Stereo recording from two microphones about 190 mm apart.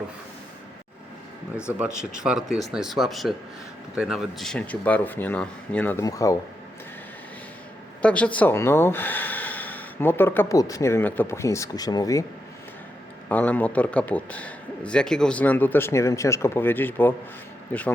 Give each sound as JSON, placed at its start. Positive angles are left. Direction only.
{"t": 1.8, "sound": "speech", "side_deg": -5}
{"t": 8.0, "sound": "speech", "side_deg": 5}
{"t": 13.2, "sound": "speech", "side_deg": 10}